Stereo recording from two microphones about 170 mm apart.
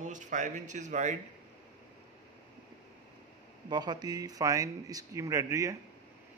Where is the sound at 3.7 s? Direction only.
25° right (ahead or behind).